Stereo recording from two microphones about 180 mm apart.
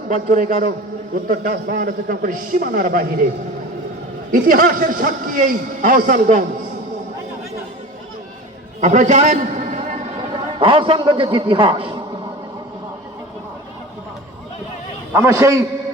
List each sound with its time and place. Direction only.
0.1 s a man's voice: 50° right (ahead or behind)
4.3 s a man's voice: 50° right (ahead or behind)
8.8 s a sound: 40° right (ahead or behind)
10.3 s a man's voice: 30° right (ahead or behind)
15.1 s a man's voice: 15° right (ahead or behind)